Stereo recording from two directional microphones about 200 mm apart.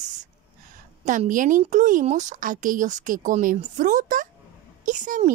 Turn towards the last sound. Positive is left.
turn(degrees=-40)  # may be behind; listen again after turning